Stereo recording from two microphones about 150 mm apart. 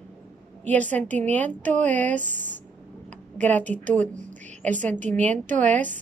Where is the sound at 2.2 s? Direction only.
55° right (ahead or behind).